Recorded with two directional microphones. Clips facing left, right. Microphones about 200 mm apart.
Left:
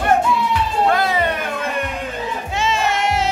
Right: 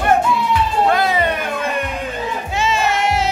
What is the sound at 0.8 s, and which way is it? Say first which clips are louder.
Music: even; 20° right (ahead or behind).